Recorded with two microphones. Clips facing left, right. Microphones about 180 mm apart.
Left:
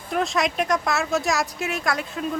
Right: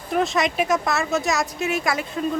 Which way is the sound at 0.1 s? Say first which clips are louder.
Right 2 dB; centre (ahead or behind).